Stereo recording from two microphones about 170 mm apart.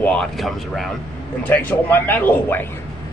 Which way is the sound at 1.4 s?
10° left (ahead or behind).